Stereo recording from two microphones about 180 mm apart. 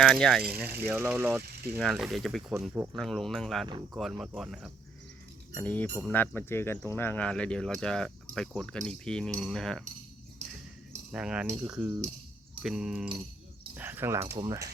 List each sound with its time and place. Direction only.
0.0 s speech: 5° left (ahead or behind)
0.6 s cutlery: 10° right (ahead or behind)
1.8 s speech: centre (ahead or behind)
5.5 s speech: 10° left (ahead or behind)
11.1 s speech: 5° right (ahead or behind)
11.6 s cutlery: 10° right (ahead or behind)
12.6 s speech: 5° right (ahead or behind)
13.7 s cutlery: 10° right (ahead or behind)
14.3 s speech: 20° right (ahead or behind)